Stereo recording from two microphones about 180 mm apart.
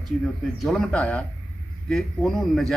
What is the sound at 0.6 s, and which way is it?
A man's voice, 5° left (ahead or behind).